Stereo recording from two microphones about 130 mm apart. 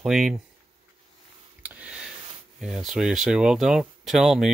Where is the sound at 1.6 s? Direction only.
10° right (ahead or behind).